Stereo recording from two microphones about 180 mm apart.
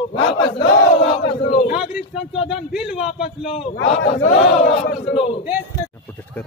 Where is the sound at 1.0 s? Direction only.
35° left (ahead or behind).